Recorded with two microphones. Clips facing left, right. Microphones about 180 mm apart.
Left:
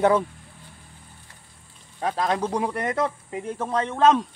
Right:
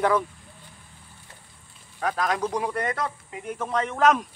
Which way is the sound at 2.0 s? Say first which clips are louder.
Left 1 dB; 25° left (ahead or behind).